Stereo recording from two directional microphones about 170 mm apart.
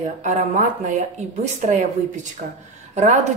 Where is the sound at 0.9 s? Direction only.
40° right (ahead or behind).